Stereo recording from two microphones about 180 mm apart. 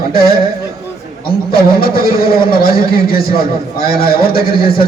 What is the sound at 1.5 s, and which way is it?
A man's voice, 55° left (ahead or behind).